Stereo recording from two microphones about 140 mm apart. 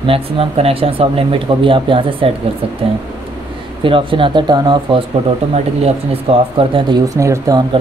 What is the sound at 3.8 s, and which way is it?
Speech, 40° right (ahead or behind).